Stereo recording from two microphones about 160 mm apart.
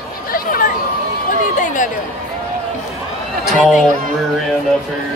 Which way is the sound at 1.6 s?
55° left (ahead or behind).